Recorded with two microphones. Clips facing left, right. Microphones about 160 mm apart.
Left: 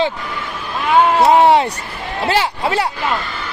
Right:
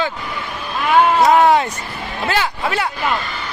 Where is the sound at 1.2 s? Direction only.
30° left (ahead or behind).